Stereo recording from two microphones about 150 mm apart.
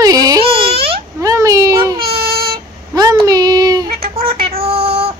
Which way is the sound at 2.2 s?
90° right.